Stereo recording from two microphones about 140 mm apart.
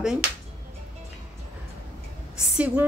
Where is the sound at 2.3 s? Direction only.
10° right (ahead or behind).